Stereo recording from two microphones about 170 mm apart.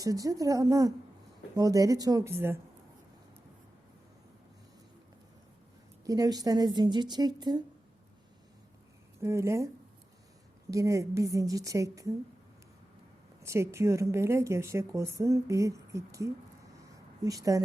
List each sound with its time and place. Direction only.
0.0 s a woman's voice: 20° right (ahead or behind)
6.1 s a woman's voice: 20° right (ahead or behind)
9.2 s speech: 15° right (ahead or behind)
10.7 s a woman's voice: 20° right (ahead or behind)
13.4 s a woman's voice: 15° right (ahead or behind)